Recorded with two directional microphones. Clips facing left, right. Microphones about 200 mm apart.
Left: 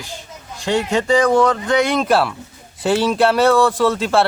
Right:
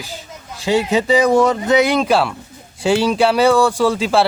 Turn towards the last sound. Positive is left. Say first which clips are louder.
# right 1 dB
turn(degrees=0)  # may be behind; listen again after turning